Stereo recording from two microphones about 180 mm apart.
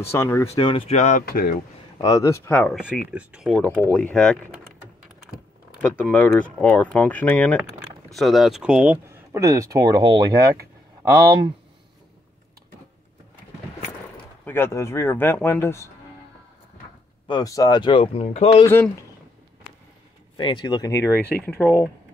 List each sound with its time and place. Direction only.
0.1 s speech: 15° left (ahead or behind)
0.6 s speech: 30° left (ahead or behind); by 1.6 s 55° left (ahead or behind)
2.0 s speech: 20° left (ahead or behind)
3.1 s speech: 5° right (ahead or behind)
3.5 s speech: 10° left (ahead or behind)
5.8 s speech: 10° left (ahead or behind); by 11.1 s 15° right (ahead or behind)
14.4 s speech: 15° left (ahead or behind)
17.3 s speech: 20° left (ahead or behind); by 18.7 s 35° left (ahead or behind)
20.3 s speech: 25° left (ahead or behind); by 21.9 s 10° left (ahead or behind)